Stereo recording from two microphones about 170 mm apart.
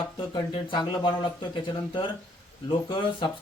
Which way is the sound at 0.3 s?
25° left (ahead or behind).